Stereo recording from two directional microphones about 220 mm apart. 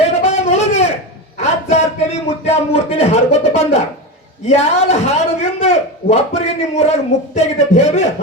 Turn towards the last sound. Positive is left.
turn(degrees=30)  # may be behind; listen again after turning